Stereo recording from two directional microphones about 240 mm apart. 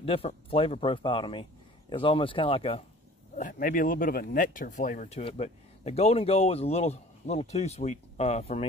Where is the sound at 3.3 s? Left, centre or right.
Left.